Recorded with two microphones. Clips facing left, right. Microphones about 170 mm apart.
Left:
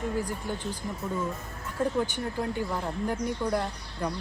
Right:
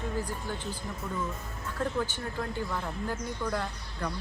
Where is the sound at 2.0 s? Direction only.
15° left (ahead or behind).